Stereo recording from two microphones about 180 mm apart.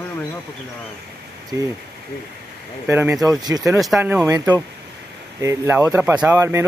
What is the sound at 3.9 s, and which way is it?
Speech, 10° right (ahead or behind).